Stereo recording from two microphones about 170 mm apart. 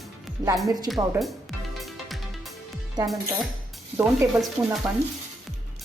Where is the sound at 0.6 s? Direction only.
25° right (ahead or behind).